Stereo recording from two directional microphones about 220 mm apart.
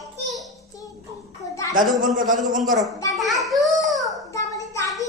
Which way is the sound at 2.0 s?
35° right (ahead or behind).